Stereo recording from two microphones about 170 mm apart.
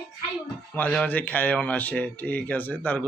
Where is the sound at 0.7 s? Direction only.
10° left (ahead or behind).